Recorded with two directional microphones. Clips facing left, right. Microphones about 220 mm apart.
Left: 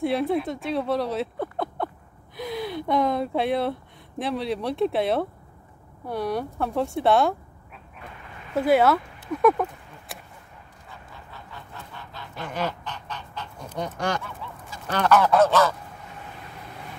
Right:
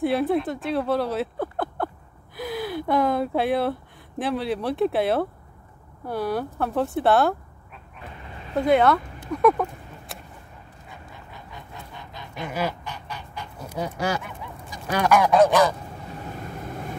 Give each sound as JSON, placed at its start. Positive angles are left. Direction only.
{"t": 0.0, "sound": "speech", "side_deg": 0}
{"t": 8.5, "sound": "speech", "side_deg": 5}
{"t": 10.9, "sound": "goose", "side_deg": -15}
{"t": 16.3, "sound": "vehicle", "side_deg": -45}